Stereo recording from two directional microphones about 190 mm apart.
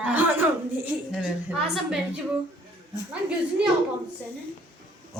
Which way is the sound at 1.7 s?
5° right (ahead or behind).